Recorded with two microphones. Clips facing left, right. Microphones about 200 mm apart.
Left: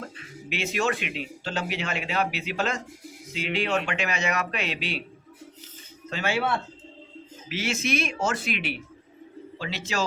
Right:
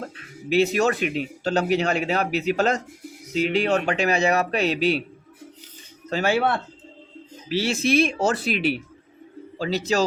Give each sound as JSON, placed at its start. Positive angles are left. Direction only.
{"t": 0.5, "sound": "a man's voice", "side_deg": -40}
{"t": 6.1, "sound": "a man's voice", "side_deg": -40}
{"t": 7.5, "sound": "a man's voice", "side_deg": -35}